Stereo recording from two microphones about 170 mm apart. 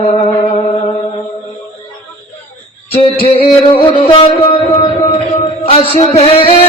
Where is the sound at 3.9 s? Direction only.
30° left (ahead or behind).